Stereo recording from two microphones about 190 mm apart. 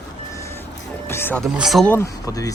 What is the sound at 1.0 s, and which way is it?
Music, 10° left (ahead or behind).